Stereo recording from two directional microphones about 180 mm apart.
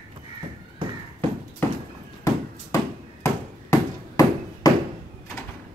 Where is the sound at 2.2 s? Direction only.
15° left (ahead or behind).